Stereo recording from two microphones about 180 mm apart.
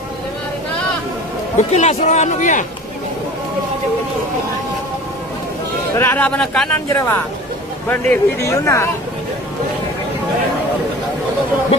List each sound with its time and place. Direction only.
1.7 s speech: 35° left (ahead or behind)
5.9 s a man's voice: 10° left (ahead or behind)
6.9 s a man's voice: 15° left (ahead or behind)